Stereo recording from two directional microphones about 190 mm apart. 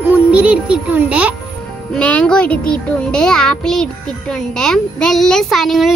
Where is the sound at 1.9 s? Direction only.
5° left (ahead or behind).